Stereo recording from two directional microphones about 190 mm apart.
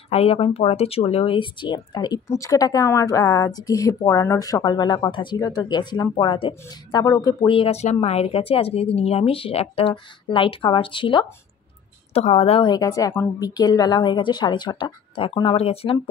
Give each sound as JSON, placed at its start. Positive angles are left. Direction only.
{"t": 0.1, "sound": "speech", "side_deg": 30}